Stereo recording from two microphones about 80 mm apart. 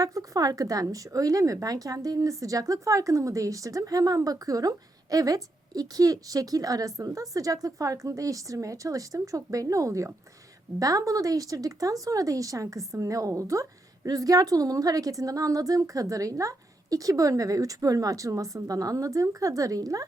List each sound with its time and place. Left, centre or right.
0.0 s a woman's voice: right